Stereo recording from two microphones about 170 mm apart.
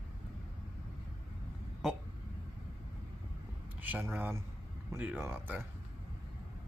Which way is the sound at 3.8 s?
10° right (ahead or behind).